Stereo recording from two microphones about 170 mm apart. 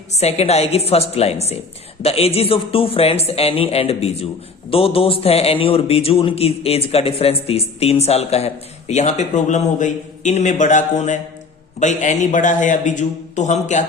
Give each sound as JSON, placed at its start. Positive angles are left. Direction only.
{"t": 0.1, "sound": "a man's voice", "side_deg": 40}